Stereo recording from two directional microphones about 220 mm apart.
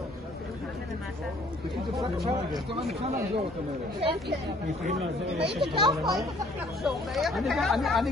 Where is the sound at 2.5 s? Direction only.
25° right (ahead or behind).